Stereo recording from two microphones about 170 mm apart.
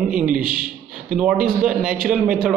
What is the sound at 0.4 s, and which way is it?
Speech, 55° right (ahead or behind).